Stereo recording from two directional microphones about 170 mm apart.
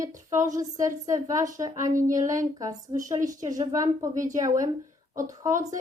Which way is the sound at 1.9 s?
50° right (ahead or behind).